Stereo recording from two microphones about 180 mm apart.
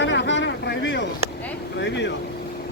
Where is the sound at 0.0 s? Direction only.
85° left.